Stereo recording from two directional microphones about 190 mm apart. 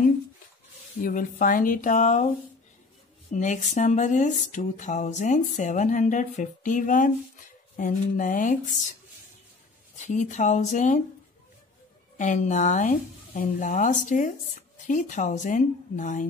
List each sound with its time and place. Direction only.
1.0 s speech: 45° left (ahead or behind)
3.3 s speech: 40° left (ahead or behind)
9.9 s speech: 40° left (ahead or behind)
12.2 s speech: 40° left (ahead or behind)